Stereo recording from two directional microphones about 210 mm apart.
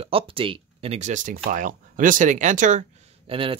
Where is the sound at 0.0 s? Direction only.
25° right (ahead or behind).